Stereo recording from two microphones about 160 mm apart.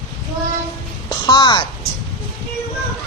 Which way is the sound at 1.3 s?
25° left (ahead or behind).